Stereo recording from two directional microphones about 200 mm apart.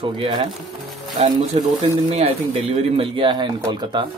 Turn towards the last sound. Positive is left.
turn(degrees=-20)  # may be behind; listen again after turning